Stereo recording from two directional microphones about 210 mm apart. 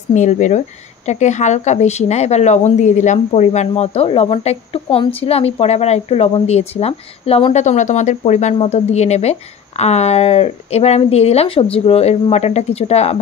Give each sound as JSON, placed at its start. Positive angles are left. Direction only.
{"t": 0.1, "sound": "speech", "side_deg": 35}